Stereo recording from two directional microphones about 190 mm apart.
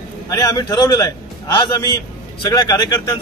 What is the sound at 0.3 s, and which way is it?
Speech, 20° left (ahead or behind).